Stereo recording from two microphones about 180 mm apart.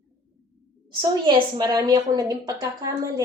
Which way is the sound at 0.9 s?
25° right (ahead or behind).